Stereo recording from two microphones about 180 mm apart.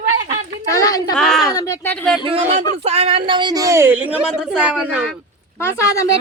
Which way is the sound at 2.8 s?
35° right (ahead or behind).